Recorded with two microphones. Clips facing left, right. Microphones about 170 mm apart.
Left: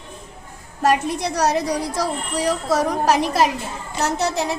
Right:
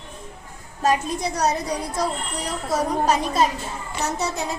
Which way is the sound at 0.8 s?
65° left (ahead or behind).